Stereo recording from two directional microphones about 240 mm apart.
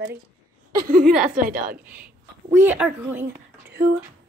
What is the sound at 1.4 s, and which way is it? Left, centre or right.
Speech, right.